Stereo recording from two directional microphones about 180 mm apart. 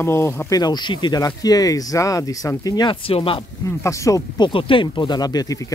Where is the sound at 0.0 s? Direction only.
15° left (ahead or behind); by 3.3 s 30° left (ahead or behind).